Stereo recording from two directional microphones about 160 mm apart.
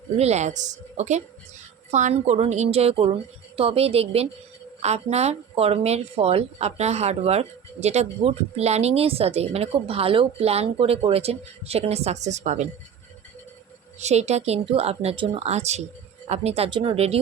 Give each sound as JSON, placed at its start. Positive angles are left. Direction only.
{"t": 0.2, "sound": "speech", "side_deg": -45}
{"t": 14.0, "sound": "speech", "side_deg": -45}